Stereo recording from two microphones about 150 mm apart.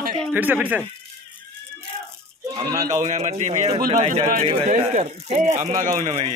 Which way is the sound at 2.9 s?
55° right (ahead or behind).